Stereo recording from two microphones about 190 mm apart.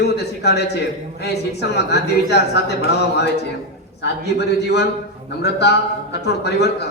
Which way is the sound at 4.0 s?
60° left (ahead or behind).